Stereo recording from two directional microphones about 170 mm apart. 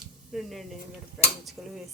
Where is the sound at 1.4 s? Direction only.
Centre (ahead or behind).